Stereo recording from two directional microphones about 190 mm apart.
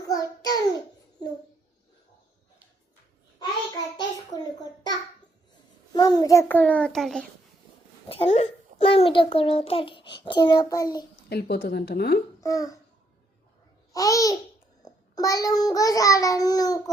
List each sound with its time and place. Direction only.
0.1 s child singing: 20° left (ahead or behind)
4.6 s a sound: 20° left (ahead or behind)
5.9 s a child's voice: 20° left (ahead or behind); by 7.3 s centre (ahead or behind)
8.0 s a child's voice: 30° left (ahead or behind)
9.6 s child singing: 30° left (ahead or behind)
11.3 s speech: 55° left (ahead or behind)
12.4 s a child's voice: 20° left (ahead or behind)
13.9 s a child's voice: 20° left (ahead or behind)
14.8 s child singing: 20° left (ahead or behind)